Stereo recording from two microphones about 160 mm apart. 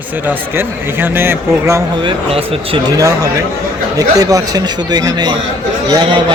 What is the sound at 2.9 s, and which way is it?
A man's voice, 20° right (ahead or behind).